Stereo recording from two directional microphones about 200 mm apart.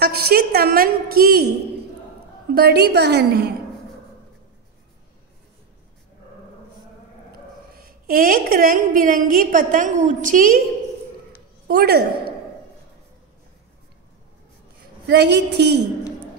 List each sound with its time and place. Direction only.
0.0 s a woman's voice: 50° right (ahead or behind)
2.5 s a woman's voice: 55° right (ahead or behind)
7.7 s a woman's voice: 45° right (ahead or behind)
11.6 s a woman's voice: 50° right (ahead or behind)
15.0 s a woman's voice: 60° right (ahead or behind)